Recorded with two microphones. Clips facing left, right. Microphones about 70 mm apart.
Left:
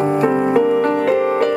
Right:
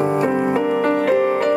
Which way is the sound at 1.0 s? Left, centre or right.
Left.